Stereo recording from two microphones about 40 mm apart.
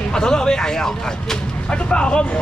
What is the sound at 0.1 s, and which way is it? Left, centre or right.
Speech, centre.